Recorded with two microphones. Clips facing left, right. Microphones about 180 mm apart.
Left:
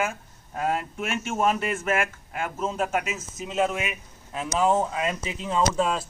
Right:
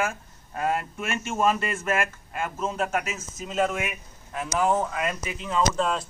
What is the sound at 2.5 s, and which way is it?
Speech, 10° left (ahead or behind).